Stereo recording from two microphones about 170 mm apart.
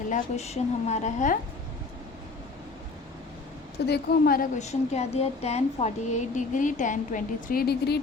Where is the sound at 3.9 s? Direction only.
60° left (ahead or behind).